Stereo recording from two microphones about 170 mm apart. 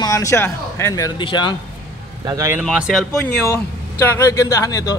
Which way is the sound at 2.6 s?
5° right (ahead or behind).